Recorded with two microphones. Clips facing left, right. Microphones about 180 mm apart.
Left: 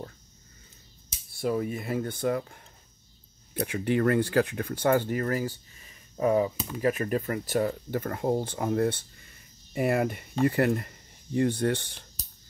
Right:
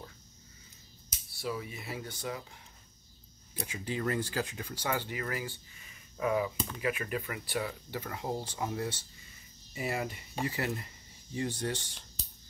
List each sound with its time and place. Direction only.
1.3 s speech: 50° left (ahead or behind)
3.6 s speech: 60° left (ahead or behind); by 6.5 s 35° left (ahead or behind)
6.5 s speech: 5° left (ahead or behind)
6.8 s speech: 40° left (ahead or behind); by 12.0 s 60° left (ahead or behind)